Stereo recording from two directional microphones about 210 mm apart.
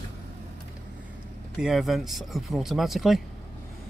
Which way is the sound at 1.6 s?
Centre (ahead or behind).